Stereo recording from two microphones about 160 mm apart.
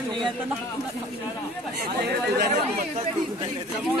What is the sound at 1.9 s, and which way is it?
Speech, 90° right.